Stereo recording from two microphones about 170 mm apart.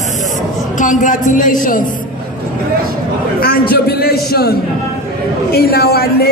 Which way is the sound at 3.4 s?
60° left (ahead or behind).